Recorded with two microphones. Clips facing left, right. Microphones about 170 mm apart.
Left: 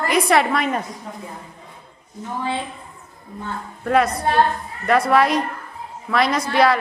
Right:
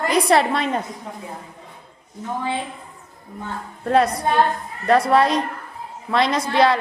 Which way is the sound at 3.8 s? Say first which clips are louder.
Even; 30° right (ahead or behind).